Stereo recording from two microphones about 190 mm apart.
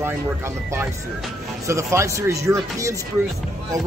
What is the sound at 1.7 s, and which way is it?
Speech, 15° right (ahead or behind).